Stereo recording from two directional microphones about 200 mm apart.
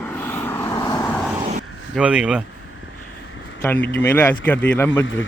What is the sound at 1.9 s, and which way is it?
Speech, 5° right (ahead or behind).